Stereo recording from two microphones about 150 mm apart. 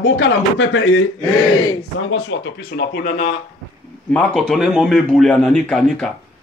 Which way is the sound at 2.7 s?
90° left.